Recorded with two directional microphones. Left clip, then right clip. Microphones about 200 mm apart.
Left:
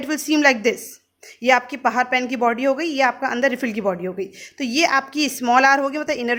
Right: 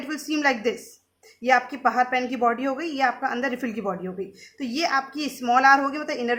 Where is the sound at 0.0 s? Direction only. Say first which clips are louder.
Left 7 dB; 40° left (ahead or behind).